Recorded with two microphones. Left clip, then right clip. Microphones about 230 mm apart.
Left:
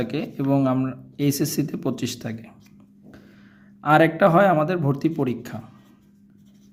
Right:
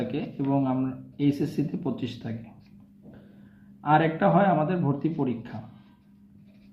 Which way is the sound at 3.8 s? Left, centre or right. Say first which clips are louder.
Left 6 dB; left.